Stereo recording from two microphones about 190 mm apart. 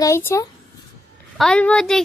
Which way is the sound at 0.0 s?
15° left (ahead or behind).